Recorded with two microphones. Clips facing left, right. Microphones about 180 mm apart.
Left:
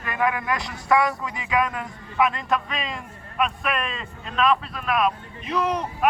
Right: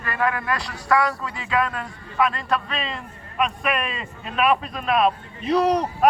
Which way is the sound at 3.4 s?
Centre (ahead or behind).